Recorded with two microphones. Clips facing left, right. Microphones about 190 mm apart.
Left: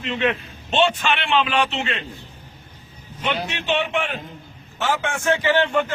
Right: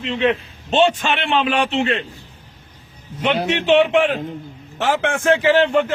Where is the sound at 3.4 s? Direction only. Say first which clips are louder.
Right 9 dB; 75° right (ahead or behind).